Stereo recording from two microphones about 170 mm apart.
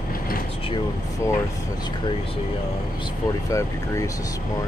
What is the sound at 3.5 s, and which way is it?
Speech, 20° left (ahead or behind).